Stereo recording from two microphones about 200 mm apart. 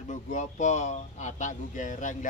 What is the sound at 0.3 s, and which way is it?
Speech, 35° left (ahead or behind).